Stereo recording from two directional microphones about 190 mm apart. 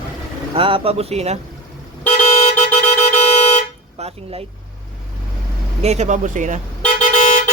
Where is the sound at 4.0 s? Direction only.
30° right (ahead or behind).